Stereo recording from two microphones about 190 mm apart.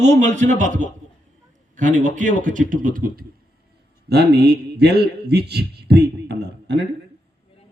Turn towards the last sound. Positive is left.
turn(degrees=-60)  # may be behind; listen again after turning